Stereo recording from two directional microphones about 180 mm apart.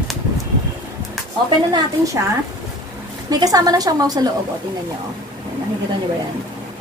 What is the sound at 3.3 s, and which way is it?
Speech, 20° right (ahead or behind).